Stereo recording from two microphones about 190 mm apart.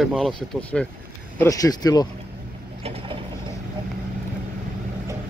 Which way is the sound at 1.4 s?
20° left (ahead or behind).